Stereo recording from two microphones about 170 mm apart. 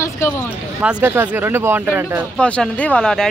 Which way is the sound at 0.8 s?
10° right (ahead or behind).